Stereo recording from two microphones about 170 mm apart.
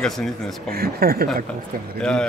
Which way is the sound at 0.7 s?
60° right (ahead or behind).